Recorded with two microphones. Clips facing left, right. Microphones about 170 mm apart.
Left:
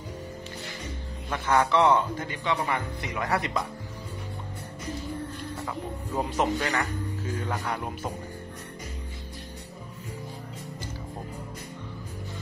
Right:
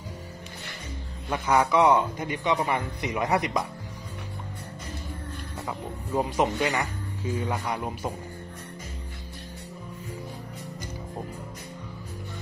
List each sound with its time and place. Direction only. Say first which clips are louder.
1.3 s speech: right 1 dB; 15° right (ahead or behind)
6.1 s speech: right 2 dB; 10° right (ahead or behind)